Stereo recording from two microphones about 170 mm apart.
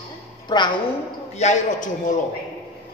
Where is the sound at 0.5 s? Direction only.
25° left (ahead or behind).